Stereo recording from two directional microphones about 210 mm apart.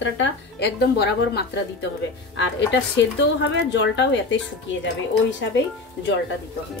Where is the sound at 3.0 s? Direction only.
60° left (ahead or behind).